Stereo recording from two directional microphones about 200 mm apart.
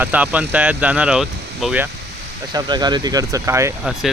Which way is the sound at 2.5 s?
20° right (ahead or behind).